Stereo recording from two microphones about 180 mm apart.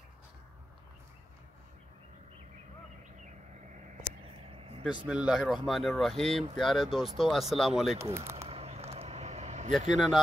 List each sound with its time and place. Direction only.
4.5 s vehicle: 30° right (ahead or behind)
5.0 s speech: 5° right (ahead or behind)
8.0 s speech: 15° right (ahead or behind)
8.5 s a sound: 35° right (ahead or behind)
9.9 s speech: centre (ahead or behind)